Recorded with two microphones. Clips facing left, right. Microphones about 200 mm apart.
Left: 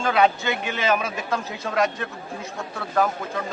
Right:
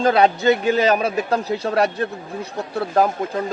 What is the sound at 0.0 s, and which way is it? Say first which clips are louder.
Speech: right 5 dB; 35° right (ahead or behind).